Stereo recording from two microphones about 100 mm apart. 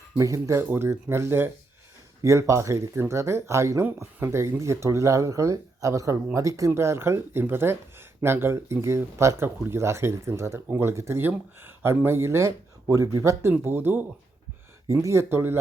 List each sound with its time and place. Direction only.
0.2 s speech: 30° right (ahead or behind)
13.5 s speech: 20° right (ahead or behind)